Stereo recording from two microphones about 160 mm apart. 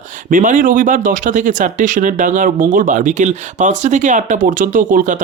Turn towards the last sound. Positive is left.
turn(degrees=-55)  # may be behind; listen again after turning